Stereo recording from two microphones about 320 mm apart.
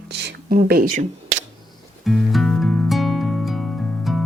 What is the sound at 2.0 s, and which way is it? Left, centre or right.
Music, centre.